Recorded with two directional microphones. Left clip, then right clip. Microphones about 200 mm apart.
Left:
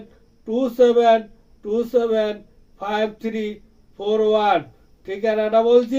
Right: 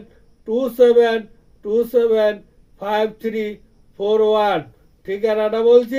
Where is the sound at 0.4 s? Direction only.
Centre (ahead or behind).